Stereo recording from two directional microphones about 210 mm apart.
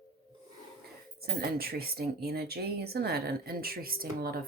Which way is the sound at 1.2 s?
45° right (ahead or behind).